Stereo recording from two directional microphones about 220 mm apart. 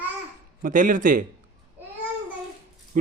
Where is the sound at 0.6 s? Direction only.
40° right (ahead or behind).